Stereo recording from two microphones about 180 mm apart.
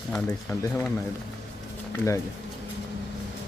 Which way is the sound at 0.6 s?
15° left (ahead or behind).